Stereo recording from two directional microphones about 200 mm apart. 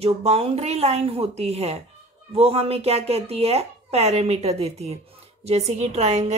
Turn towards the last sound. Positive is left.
turn(degrees=-35)  # may be behind; listen again after turning